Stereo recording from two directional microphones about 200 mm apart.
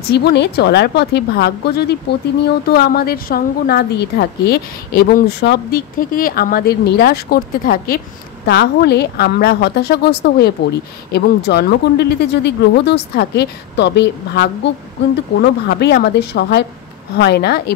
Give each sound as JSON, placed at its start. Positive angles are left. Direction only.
{"t": 0.1, "sound": "a woman's voice", "side_deg": 55}
{"t": 15.7, "sound": "a woman's voice", "side_deg": 55}